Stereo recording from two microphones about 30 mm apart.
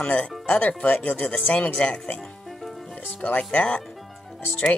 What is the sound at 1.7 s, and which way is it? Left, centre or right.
Speech, left.